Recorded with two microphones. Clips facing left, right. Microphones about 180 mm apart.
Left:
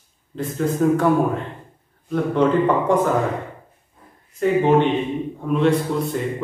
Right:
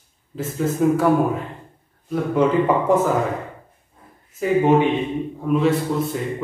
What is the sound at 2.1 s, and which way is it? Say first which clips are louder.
A man's voice: left 1 dB; 5° right (ahead or behind).